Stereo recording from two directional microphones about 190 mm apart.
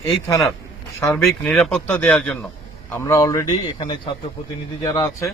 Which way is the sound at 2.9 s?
15° left (ahead or behind).